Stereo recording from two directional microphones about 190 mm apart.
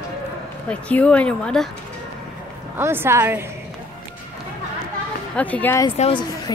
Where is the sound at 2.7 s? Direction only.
10° right (ahead or behind).